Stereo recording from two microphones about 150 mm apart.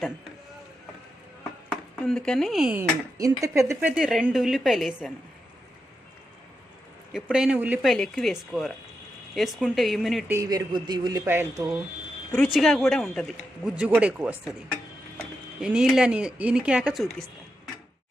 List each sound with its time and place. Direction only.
1.7 s speech: 5° left (ahead or behind)
2.7 s speech: 20° right (ahead or behind); by 5.1 s centre (ahead or behind)
7.1 s speech: 5° right (ahead or behind)
7.9 s speech: 5° left (ahead or behind)
10.2 s a man's voice: 20° right (ahead or behind)
11.3 s speech: 20° right (ahead or behind)
12.3 s speech: centre (ahead or behind)
13.7 s speech: 10° right (ahead or behind)